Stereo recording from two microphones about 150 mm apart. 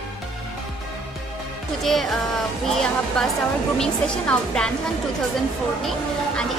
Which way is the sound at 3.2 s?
5° left (ahead or behind).